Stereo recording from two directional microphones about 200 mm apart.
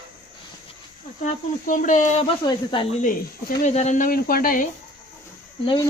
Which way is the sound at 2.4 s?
25° left (ahead or behind).